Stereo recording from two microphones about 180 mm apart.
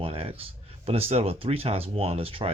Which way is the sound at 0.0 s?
30° right (ahead or behind).